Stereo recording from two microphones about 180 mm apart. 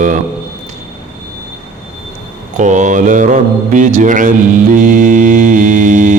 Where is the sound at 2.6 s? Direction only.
45° right (ahead or behind).